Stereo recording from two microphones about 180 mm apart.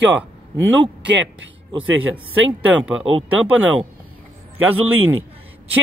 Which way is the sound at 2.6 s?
10° right (ahead or behind).